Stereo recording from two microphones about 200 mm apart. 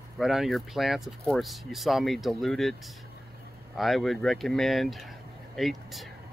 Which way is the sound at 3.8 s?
Centre (ahead or behind).